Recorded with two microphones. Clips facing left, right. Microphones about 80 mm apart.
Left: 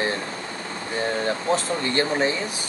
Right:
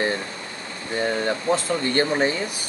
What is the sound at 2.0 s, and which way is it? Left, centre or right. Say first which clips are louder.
Speech: right 1 dB; right.